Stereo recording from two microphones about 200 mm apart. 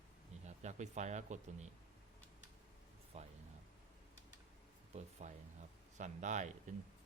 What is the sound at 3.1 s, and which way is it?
Speech, 30° right (ahead or behind).